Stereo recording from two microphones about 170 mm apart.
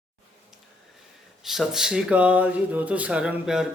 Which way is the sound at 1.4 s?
Centre (ahead or behind).